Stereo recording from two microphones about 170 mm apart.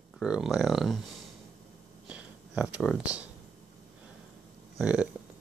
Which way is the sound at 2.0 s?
5° right (ahead or behind).